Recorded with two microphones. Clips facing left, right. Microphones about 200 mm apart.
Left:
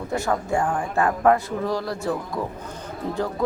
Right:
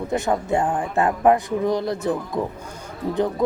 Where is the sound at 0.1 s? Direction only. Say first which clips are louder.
Right 2 dB; 20° right (ahead or behind).